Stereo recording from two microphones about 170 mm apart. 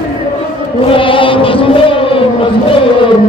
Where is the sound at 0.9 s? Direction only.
30° left (ahead or behind).